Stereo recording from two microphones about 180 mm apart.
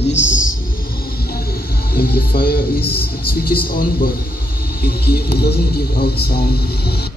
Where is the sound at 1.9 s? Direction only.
60° left (ahead or behind).